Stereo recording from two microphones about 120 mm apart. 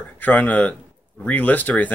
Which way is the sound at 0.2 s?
15° left (ahead or behind).